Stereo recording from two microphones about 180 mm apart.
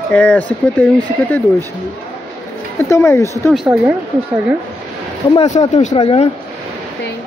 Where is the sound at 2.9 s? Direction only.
15° left (ahead or behind).